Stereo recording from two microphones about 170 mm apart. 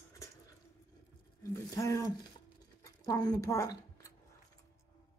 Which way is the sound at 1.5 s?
20° left (ahead or behind).